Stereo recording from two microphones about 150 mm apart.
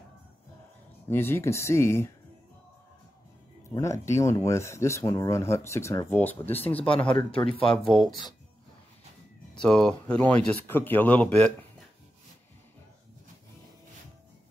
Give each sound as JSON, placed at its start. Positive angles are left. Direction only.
{"t": 1.0, "sound": "speech", "side_deg": 15}
{"t": 3.7, "sound": "speech", "side_deg": 20}
{"t": 7.2, "sound": "speech", "side_deg": 35}
{"t": 7.8, "sound": "speech", "side_deg": 0}
{"t": 9.6, "sound": "speech", "side_deg": 5}